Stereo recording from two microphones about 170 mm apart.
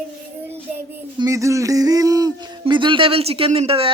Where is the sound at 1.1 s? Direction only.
20° right (ahead or behind).